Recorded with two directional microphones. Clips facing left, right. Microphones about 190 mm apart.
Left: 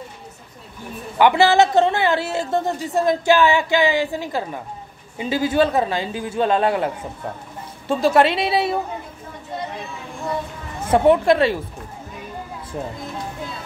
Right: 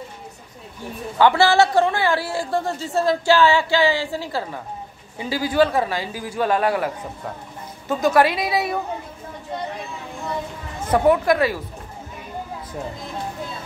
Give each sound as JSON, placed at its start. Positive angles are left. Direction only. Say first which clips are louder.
{"t": 1.1, "sound": "a woman's voice", "louder": "left 1 dB", "side_deg": 15}
{"t": 7.9, "sound": "a woman's voice", "louder": "left 1 dB", "side_deg": 25}
{"t": 10.9, "sound": "a woman's voice", "louder": "left 2 dB", "side_deg": 25}